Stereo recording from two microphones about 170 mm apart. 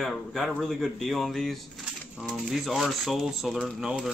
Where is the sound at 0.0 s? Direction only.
Centre (ahead or behind).